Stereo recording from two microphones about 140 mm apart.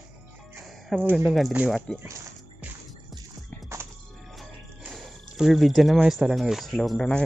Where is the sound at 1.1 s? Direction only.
Centre (ahead or behind).